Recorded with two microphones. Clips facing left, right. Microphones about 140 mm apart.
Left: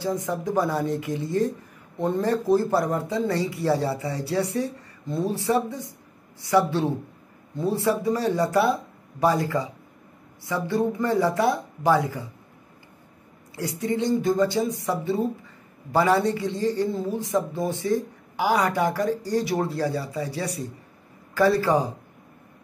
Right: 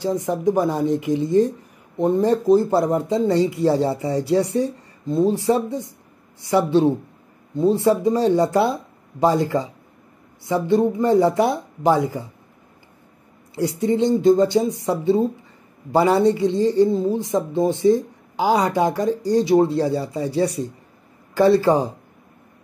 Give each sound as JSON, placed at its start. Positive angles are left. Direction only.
{"t": 0.0, "sound": "speech", "side_deg": -20}
{"t": 13.6, "sound": "speech", "side_deg": -25}